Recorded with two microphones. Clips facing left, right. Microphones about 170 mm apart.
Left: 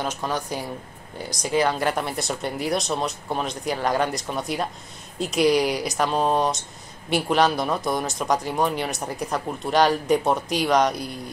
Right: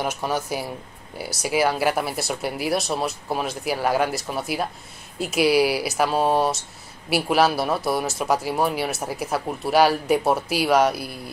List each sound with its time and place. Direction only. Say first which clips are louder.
0.0 s speech: right 2 dB; 10° right (ahead or behind)